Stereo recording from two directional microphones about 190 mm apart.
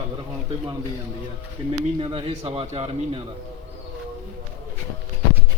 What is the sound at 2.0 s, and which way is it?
A man's voice, 30° right (ahead or behind).